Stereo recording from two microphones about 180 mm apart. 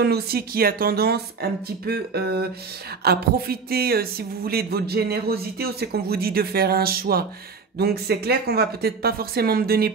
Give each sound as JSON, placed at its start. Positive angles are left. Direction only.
{"t": 0.0, "sound": "speech", "side_deg": -60}